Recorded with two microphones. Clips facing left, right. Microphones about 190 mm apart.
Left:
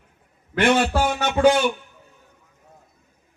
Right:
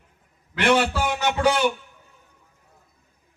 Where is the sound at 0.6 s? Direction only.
55° left (ahead or behind).